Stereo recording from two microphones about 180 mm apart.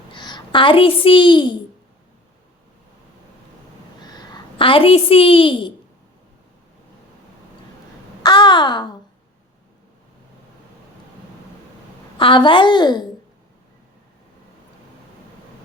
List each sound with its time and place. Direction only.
0.1 s a woman's voice: 25° left (ahead or behind)
4.0 s a woman's voice: 20° left (ahead or behind)
8.2 s a woman's voice: 25° left (ahead or behind)
12.1 s a woman's voice: 25° left (ahead or behind)